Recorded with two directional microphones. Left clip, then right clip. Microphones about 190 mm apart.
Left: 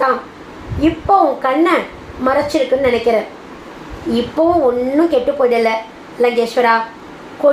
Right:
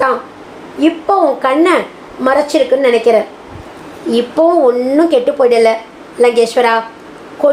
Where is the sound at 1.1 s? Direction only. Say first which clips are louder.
Even; 50° right (ahead or behind).